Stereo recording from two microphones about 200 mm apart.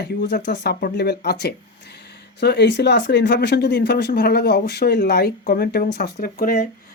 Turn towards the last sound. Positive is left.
turn(degrees=50)  # may be behind; listen again after turning